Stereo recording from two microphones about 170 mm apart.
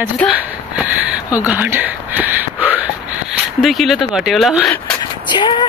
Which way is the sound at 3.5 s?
Centre (ahead or behind).